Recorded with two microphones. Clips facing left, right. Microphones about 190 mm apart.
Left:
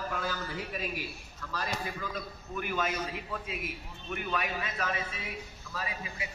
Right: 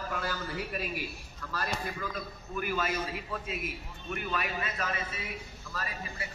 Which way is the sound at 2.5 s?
5° right (ahead or behind).